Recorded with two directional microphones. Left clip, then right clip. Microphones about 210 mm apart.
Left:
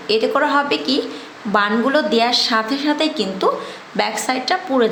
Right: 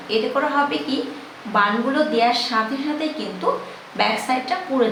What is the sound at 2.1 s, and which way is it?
A woman's voice, 50° left (ahead or behind).